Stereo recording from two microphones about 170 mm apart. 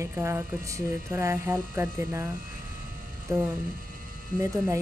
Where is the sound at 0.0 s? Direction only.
15° right (ahead or behind).